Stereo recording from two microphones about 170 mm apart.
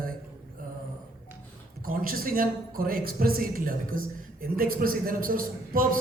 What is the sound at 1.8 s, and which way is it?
Speech, 60° right (ahead or behind).